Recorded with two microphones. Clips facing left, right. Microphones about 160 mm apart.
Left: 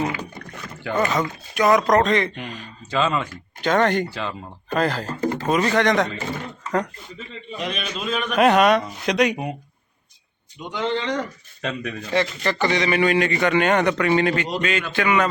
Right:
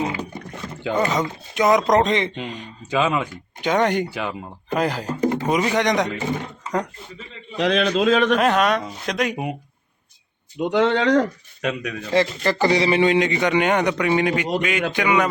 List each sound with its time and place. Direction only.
0.5 s rowboat: 25° right (ahead or behind)
0.9 s speech: 20° right (ahead or behind)
7.5 s a man's voice: 90° right
8.4 s speech: 10° left (ahead or behind)
10.7 s speech: 80° right
11.6 s speech: centre (ahead or behind)
12.1 s speech: 35° right (ahead or behind); by 15.3 s 15° right (ahead or behind)